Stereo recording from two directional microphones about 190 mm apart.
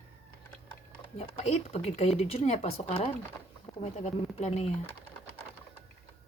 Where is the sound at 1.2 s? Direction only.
30° left (ahead or behind).